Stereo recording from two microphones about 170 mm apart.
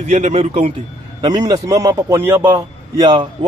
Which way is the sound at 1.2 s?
25° right (ahead or behind).